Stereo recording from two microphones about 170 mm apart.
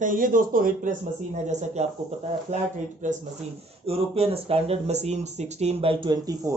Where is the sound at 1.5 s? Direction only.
45° right (ahead or behind).